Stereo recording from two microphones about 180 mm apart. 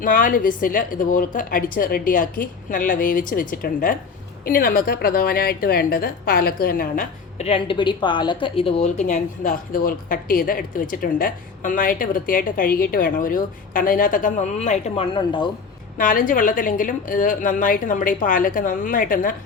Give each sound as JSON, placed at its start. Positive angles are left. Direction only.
{"t": 0.0, "sound": "a woman's voice", "side_deg": 50}
{"t": 7.4, "sound": "a woman's voice", "side_deg": 30}
{"t": 15.1, "sound": "speech", "side_deg": 25}
{"t": 16.0, "sound": "a woman's voice", "side_deg": 50}